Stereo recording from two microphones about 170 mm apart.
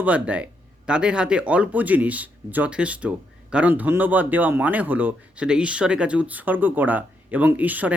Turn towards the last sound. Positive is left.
turn(degrees=-10)  # may be behind; listen again after turning